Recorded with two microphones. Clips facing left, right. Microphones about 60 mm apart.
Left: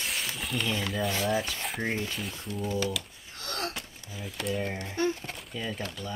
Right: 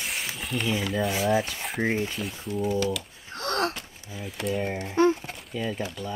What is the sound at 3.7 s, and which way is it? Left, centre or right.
Speech, centre.